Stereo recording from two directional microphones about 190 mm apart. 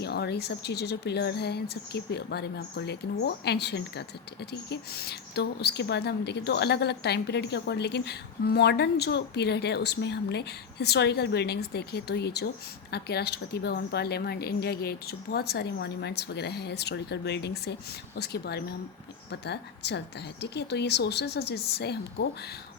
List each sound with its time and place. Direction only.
0.0 s a woman's voice: 60° left (ahead or behind)